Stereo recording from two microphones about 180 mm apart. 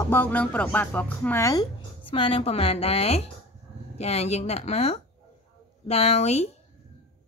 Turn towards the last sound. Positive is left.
turn(degrees=35)  # may be behind; listen again after turning